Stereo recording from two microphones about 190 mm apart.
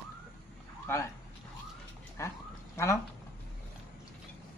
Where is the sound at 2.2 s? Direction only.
15° left (ahead or behind).